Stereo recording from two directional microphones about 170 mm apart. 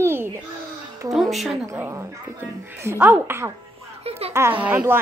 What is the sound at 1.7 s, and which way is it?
A woman's voice, 20° right (ahead or behind).